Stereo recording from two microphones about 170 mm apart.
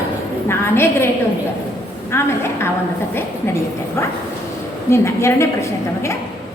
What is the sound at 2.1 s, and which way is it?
Speech, 15° left (ahead or behind).